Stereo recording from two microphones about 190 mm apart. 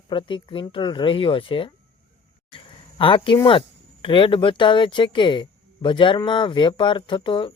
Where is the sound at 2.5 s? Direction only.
25° left (ahead or behind).